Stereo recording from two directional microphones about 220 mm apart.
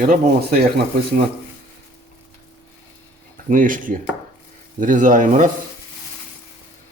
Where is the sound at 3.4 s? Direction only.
35° right (ahead or behind).